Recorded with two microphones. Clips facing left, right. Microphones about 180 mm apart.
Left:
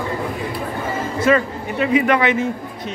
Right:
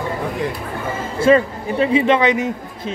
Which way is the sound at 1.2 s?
30° right (ahead or behind).